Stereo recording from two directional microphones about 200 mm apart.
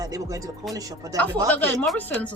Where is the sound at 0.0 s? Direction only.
15° right (ahead or behind).